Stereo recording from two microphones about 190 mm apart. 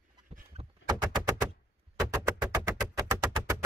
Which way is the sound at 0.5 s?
35° right (ahead or behind).